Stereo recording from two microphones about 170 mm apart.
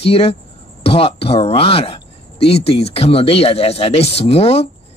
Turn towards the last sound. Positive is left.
turn(degrees=35)  # may be behind; listen again after turning